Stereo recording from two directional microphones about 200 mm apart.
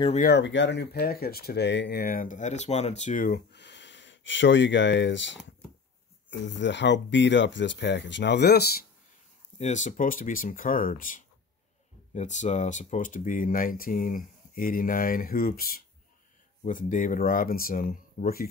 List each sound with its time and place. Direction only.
0.2 s speech: 60° left (ahead or behind); by 3.3 s 40° left (ahead or behind)
3.5 s speech: 60° left (ahead or behind)
6.4 s speech: 65° left (ahead or behind)
9.6 s speech: 35° left (ahead or behind)